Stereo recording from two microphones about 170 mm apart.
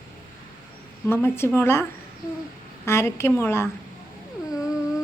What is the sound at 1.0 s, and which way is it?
Speech, 15° left (ahead or behind).